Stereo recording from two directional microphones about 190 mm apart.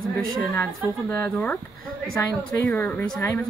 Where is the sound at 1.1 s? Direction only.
10° left (ahead or behind).